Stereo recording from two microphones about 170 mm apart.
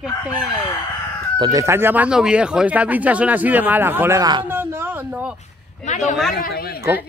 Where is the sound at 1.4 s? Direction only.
20° right (ahead or behind).